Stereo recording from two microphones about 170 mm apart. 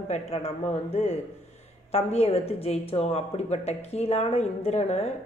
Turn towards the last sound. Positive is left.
turn(degrees=40)  # may be behind; listen again after turning